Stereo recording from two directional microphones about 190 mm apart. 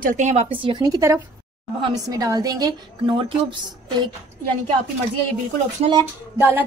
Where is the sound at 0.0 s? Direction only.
40° right (ahead or behind).